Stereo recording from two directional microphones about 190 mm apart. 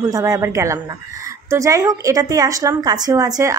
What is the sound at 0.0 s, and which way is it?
A woman's voice, 15° right (ahead or behind).